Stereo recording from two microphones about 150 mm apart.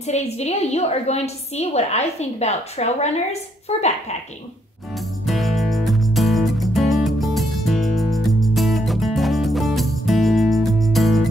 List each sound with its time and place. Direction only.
0.0 s a woman's voice: 45° left (ahead or behind)
5.2 s music: centre (ahead or behind)